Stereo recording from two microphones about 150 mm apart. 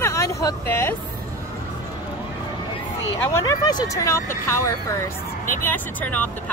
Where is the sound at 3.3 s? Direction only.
20° left (ahead or behind).